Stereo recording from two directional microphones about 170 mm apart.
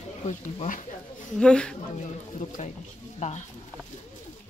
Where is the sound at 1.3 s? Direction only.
5° left (ahead or behind).